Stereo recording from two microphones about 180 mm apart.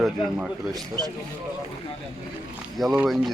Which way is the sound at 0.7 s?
20° right (ahead or behind).